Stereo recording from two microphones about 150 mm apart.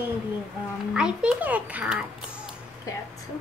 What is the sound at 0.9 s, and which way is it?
A woman's voice, 5° right (ahead or behind).